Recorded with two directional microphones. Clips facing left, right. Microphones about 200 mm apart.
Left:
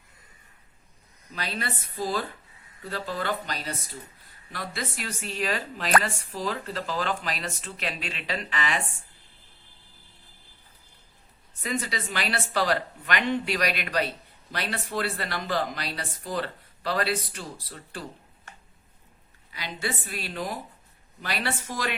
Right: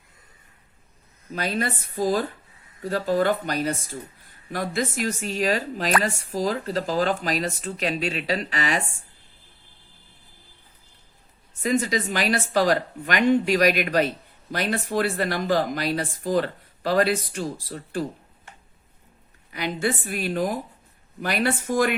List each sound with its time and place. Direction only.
1.3 s speech: 45° right (ahead or behind)
11.6 s speech: 45° right (ahead or behind)
19.5 s speech: 50° right (ahead or behind)